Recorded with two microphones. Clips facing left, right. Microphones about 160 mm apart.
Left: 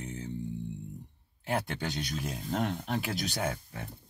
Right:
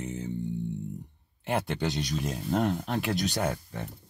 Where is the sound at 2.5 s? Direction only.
40° right (ahead or behind).